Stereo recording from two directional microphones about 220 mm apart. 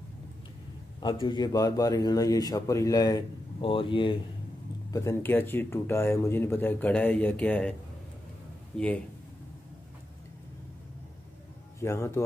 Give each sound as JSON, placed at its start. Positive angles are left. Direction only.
{"t": 1.2, "sound": "speech", "side_deg": 20}
{"t": 4.9, "sound": "speech", "side_deg": 10}
{"t": 8.7, "sound": "speech", "side_deg": 5}
{"t": 11.8, "sound": "speech", "side_deg": 10}